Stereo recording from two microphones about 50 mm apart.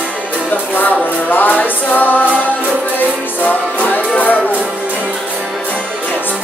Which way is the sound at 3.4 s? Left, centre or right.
Left.